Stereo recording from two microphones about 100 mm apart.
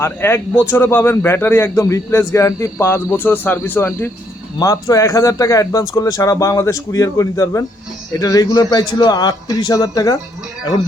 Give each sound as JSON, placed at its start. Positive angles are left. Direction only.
{"t": 0.0, "sound": "speech", "side_deg": 25}